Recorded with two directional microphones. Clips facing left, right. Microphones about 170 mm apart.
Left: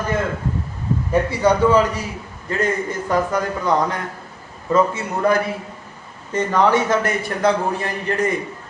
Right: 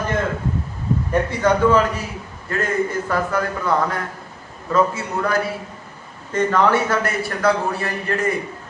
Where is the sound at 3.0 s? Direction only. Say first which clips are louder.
Left 2 dB; 15° left (ahead or behind).